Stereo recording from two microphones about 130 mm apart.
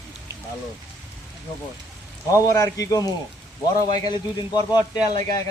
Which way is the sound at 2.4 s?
25° left (ahead or behind).